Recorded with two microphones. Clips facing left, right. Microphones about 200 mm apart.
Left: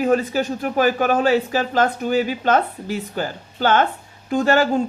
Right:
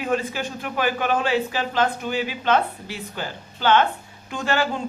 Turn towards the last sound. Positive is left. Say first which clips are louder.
# left 7 dB
turn(degrees=45)  # may be behind; listen again after turning